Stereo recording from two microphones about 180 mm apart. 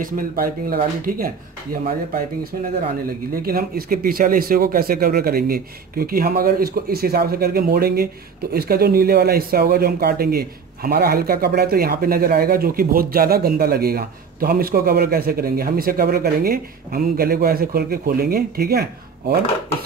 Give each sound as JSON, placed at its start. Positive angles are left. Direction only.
{"t": 0.0, "sound": "speech", "side_deg": -50}